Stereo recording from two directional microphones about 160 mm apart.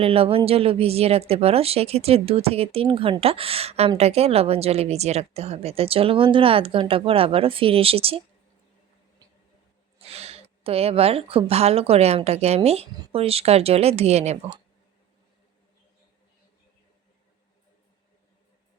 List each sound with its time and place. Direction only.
0.0 s speech: 35° right (ahead or behind)
10.0 s speech: 40° right (ahead or behind)